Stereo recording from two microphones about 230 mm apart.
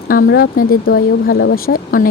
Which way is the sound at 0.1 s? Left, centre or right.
Left.